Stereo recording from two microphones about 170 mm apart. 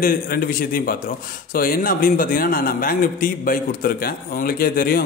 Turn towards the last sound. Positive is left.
turn(degrees=55)  # may be behind; listen again after turning